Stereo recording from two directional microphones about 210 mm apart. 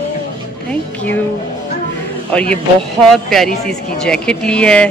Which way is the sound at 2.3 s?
5° left (ahead or behind).